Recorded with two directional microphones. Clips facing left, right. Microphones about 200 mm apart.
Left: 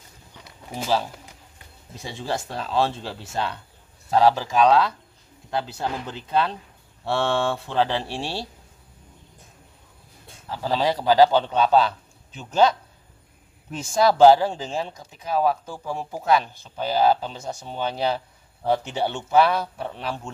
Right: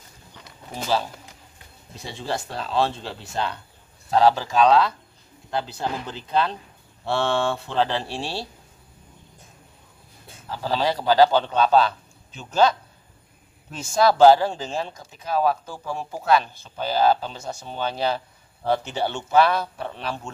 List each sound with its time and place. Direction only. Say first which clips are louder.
0.7 s speech: left 1 dB; 10° left (ahead or behind)
2.1 s speech: even; 10° left (ahead or behind)
10.8 s speech: left 1 dB; 15° left (ahead or behind)
13.7 s speech: even; 15° left (ahead or behind)